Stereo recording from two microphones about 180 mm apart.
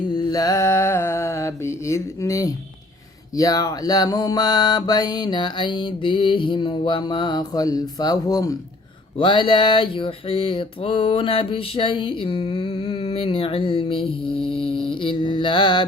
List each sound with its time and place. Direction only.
0.0 s mantra: 25° left (ahead or behind)